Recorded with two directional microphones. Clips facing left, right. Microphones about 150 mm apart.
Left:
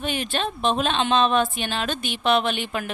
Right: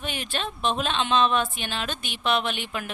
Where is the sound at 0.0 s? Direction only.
30° left (ahead or behind).